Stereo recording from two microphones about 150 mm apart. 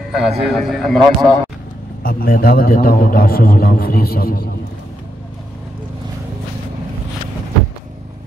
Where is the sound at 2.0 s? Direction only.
85° left.